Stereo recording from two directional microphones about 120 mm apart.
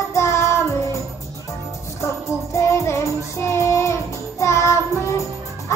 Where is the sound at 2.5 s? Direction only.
25° left (ahead or behind).